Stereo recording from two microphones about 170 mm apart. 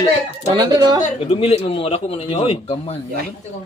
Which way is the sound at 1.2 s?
35° left (ahead or behind).